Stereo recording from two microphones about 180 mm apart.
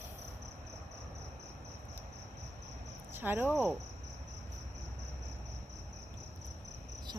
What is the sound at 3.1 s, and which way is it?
Speech, 10° right (ahead or behind).